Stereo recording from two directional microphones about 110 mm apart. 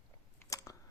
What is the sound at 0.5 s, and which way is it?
Chewing, 30° left (ahead or behind).